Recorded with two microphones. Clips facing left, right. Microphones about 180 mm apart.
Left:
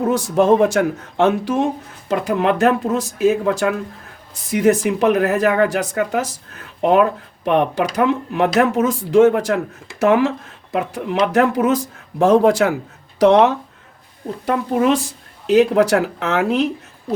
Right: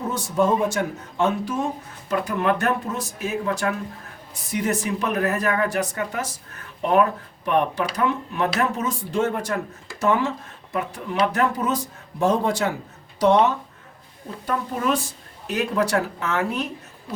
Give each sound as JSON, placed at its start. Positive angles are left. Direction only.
{"t": 0.0, "sound": "speech", "side_deg": 90}
{"t": 7.4, "sound": "speech", "side_deg": 90}